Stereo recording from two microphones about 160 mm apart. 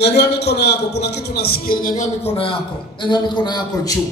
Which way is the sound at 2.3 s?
35° left (ahead or behind).